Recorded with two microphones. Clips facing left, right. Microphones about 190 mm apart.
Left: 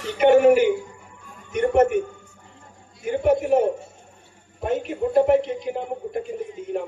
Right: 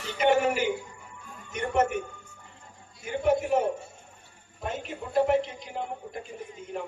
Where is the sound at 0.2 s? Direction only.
60° left (ahead or behind).